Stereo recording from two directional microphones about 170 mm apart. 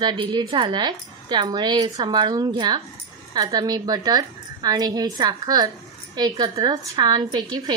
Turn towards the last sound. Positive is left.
turn(degrees=-25)  # may be behind; listen again after turning